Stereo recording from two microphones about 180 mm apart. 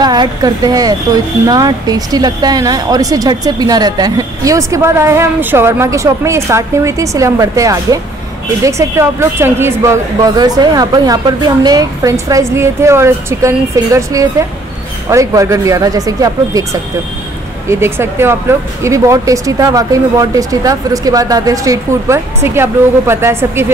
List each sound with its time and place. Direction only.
0.0 s speech: 25° right (ahead or behind)
17.6 s speech: 15° right (ahead or behind)